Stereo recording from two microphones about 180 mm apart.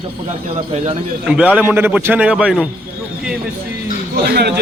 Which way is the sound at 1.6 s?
10° right (ahead or behind).